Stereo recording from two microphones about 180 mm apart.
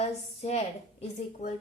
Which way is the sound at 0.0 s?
35° left (ahead or behind).